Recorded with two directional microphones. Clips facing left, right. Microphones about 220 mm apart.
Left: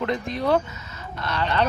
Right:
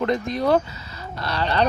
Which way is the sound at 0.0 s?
40° right (ahead or behind).